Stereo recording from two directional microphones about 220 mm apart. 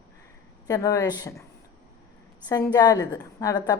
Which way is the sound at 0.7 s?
15° left (ahead or behind).